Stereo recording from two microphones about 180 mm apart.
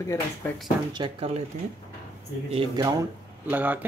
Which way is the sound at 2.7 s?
20° right (ahead or behind).